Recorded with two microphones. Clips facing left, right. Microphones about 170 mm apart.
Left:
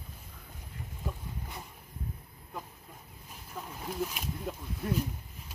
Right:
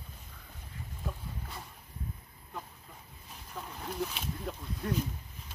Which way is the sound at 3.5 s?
5° left (ahead or behind).